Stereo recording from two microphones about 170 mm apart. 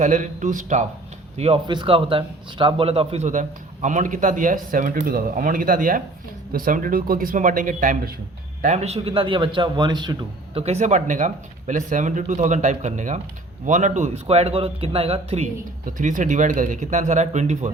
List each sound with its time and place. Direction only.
0.0 s a man's voice: 45° right (ahead or behind)
1.6 s a man's voice: 25° right (ahead or behind); by 8.1 s 50° right (ahead or behind)
8.6 s a man's voice: 40° right (ahead or behind)
16.0 s a man's voice: 50° right (ahead or behind)